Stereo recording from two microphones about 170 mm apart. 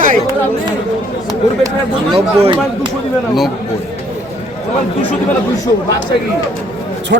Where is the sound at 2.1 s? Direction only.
30° right (ahead or behind).